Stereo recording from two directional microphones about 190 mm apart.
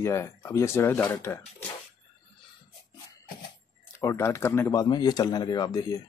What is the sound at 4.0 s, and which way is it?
Speech, 15° left (ahead or behind).